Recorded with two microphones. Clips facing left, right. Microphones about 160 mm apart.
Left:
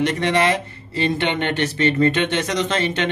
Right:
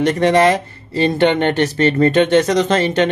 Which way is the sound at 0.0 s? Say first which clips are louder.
Right 6 dB; 45° right (ahead or behind).